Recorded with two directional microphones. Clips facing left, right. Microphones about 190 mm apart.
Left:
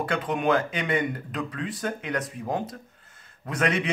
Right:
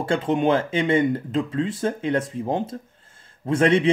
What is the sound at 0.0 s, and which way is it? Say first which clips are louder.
A man's voice: right 5 dB; 25° right (ahead or behind).